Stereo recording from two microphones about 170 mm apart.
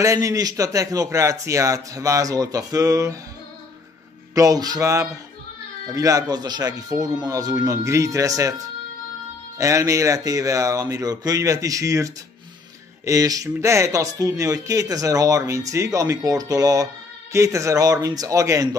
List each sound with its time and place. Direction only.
0.0 s speech: 20° right (ahead or behind)
4.4 s speech: 20° right (ahead or behind)